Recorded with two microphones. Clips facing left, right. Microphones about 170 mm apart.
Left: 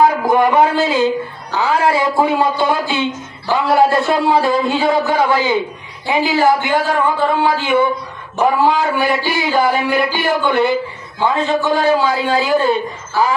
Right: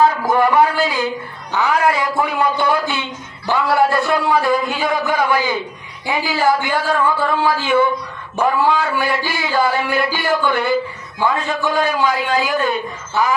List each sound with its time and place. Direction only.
0.0 s speech: 20° left (ahead or behind)